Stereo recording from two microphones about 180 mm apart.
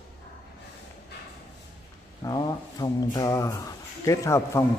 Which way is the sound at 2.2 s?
20° left (ahead or behind).